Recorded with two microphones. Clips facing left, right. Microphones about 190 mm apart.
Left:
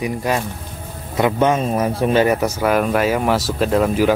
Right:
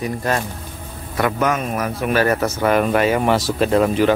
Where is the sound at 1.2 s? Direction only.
25° left (ahead or behind).